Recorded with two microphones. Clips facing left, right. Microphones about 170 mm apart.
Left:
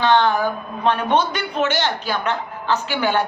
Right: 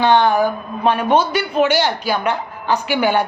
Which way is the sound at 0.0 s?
10° right (ahead or behind).